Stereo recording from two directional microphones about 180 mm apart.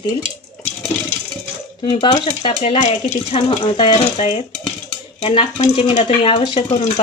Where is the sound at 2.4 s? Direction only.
30° left (ahead or behind).